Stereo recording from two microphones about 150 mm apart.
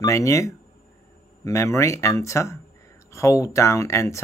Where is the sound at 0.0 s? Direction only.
20° left (ahead or behind).